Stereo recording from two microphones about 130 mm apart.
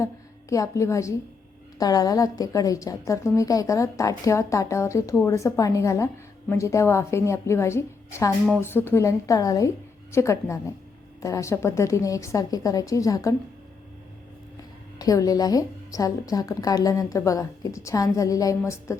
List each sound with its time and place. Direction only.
0.5 s a woman's voice: 25° left (ahead or behind)
14.9 s a woman's voice: 25° left (ahead or behind)